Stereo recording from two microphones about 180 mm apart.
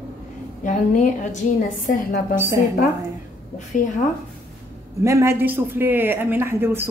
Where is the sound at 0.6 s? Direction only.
45° left (ahead or behind).